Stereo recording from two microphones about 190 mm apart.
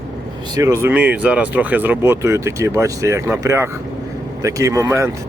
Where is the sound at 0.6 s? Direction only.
15° right (ahead or behind).